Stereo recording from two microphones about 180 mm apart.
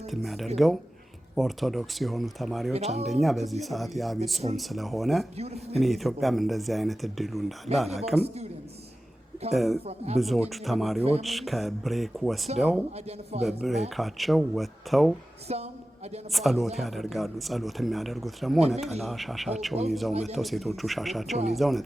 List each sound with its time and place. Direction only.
0.1 s speech: centre (ahead or behind)
9.5 s speech: centre (ahead or behind)
15.4 s a woman's voice: 35° right (ahead or behind)
16.3 s speech: centre (ahead or behind)